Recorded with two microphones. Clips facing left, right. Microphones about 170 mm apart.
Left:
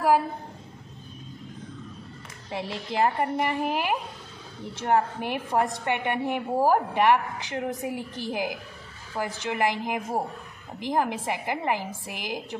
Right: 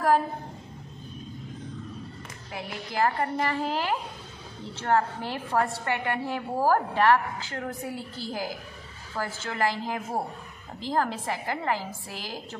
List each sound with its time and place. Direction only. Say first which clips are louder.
2.5 s a woman's voice: left 3 dB; 20° left (ahead or behind)